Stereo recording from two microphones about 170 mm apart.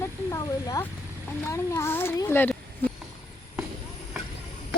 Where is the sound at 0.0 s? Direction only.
20° left (ahead or behind).